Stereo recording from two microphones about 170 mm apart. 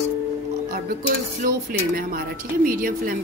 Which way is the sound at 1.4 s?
55° right (ahead or behind).